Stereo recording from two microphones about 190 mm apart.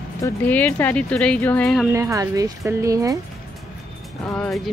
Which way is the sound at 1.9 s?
15° right (ahead or behind).